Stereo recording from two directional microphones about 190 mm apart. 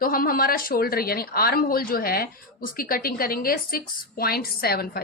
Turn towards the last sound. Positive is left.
turn(degrees=55)  # may be behind; listen again after turning